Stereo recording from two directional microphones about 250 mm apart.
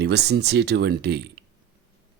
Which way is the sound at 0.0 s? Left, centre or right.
Right.